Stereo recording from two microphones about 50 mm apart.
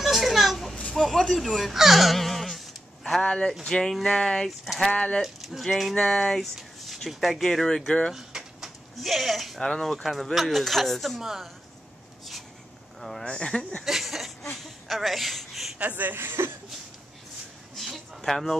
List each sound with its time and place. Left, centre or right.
0.0 s children playing: centre
0.9 s speech: centre
1.6 s a sound: centre
3.3 s speech: centre
5.2 s speech: centre
7.4 s speech: centre
8.1 s bird: centre
9.6 s speech: centre
13.2 s speech: centre
13.8 s a sound: centre
15.8 s speech: right
17.7 s a sound: centre
18.2 s speech: centre